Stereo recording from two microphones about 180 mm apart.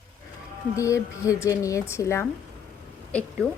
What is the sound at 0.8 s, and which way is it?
A woman's voice, 15° left (ahead or behind).